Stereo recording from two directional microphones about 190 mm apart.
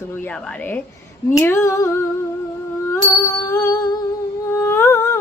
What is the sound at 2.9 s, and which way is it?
Music, 15° left (ahead or behind).